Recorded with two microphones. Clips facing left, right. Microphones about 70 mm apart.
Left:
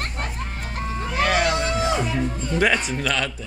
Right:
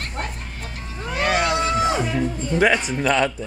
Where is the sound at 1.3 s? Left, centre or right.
Centre.